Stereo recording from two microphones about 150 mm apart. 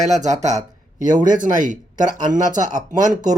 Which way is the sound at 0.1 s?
50° right (ahead or behind).